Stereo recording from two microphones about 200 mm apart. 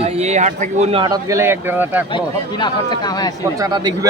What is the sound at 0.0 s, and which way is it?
Speech, 35° right (ahead or behind).